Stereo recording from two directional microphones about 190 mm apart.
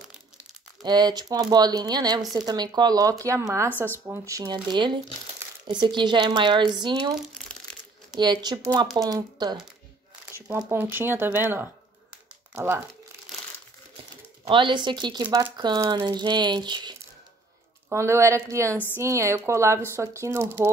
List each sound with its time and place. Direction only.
0.8 s speech: 20° right (ahead or behind)
8.2 s speech: 20° right (ahead or behind)
14.4 s speech: 25° right (ahead or behind)
15.2 s speech: 10° right (ahead or behind)
15.5 s speech: 20° right (ahead or behind)